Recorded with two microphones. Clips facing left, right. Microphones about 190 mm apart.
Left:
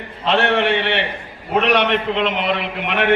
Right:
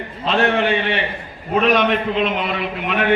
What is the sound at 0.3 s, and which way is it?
A man's voice, 70° left (ahead or behind).